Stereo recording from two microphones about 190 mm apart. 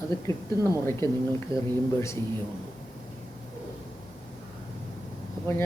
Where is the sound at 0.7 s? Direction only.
15° left (ahead or behind).